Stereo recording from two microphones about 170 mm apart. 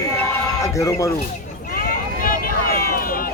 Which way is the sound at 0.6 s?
20° left (ahead or behind).